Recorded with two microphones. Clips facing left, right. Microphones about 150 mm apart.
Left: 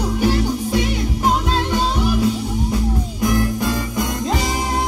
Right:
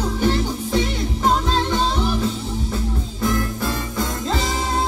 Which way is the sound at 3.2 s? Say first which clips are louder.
Left 3 dB; 15° left (ahead or behind).